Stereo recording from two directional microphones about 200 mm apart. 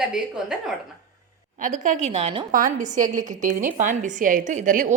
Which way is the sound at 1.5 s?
40° right (ahead or behind).